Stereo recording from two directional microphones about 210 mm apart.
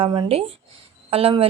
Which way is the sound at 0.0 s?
25° right (ahead or behind).